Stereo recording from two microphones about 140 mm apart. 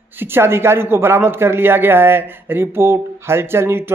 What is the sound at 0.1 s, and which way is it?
A man's voice, 15° right (ahead or behind).